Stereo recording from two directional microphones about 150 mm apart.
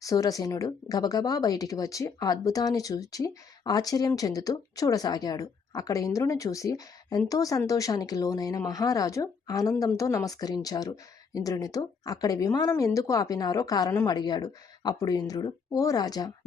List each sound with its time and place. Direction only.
0.0 s speech: 20° left (ahead or behind)